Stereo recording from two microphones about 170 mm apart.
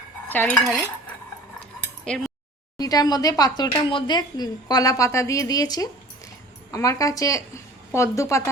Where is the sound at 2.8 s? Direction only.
20° left (ahead or behind).